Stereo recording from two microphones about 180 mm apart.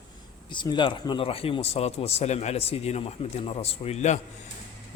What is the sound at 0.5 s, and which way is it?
Speech, 25° left (ahead or behind).